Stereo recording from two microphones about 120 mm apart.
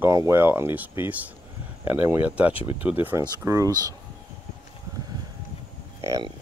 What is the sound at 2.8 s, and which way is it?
Speech, 15° right (ahead or behind).